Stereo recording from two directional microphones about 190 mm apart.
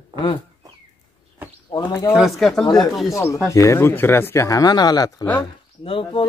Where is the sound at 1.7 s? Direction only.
20° left (ahead or behind).